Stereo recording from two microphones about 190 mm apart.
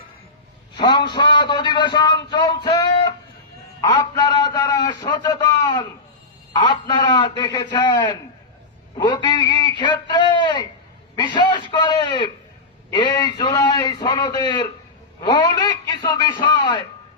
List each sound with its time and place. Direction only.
0.8 s a man's voice: 25° left (ahead or behind)